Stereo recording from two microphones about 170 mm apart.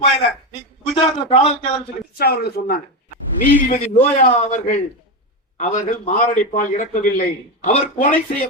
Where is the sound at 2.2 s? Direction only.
65° left (ahead or behind).